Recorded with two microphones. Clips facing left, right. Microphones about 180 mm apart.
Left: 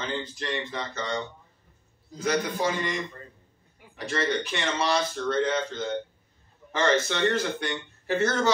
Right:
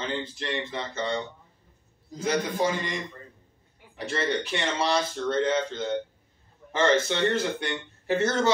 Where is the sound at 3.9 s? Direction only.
25° right (ahead or behind).